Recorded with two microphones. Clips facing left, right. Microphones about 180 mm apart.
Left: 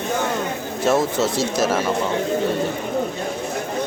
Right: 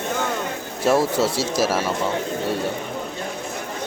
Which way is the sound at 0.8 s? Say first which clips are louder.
Even; 10° right (ahead or behind).